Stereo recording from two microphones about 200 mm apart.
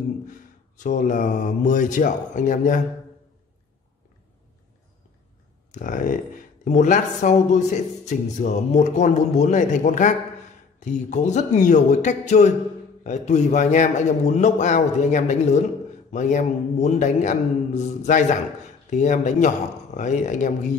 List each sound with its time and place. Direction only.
0.3 s speech: 40° left (ahead or behind)
5.7 s speech: 40° left (ahead or behind)